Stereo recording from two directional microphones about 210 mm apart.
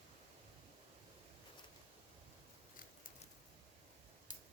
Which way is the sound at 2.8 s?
40° left (ahead or behind).